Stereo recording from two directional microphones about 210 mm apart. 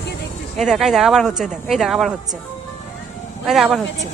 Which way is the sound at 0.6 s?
Centre (ahead or behind).